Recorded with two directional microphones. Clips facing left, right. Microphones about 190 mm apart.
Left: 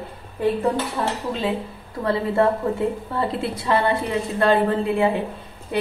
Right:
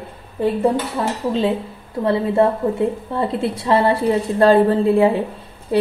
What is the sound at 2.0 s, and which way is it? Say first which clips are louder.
A woman's voice: right 4 dB; 20° right (ahead or behind).